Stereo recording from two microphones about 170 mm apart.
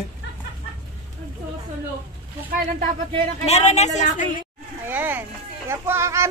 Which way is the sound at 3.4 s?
40° left (ahead or behind).